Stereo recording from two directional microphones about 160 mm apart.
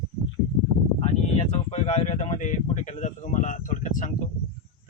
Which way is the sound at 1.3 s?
45° left (ahead or behind).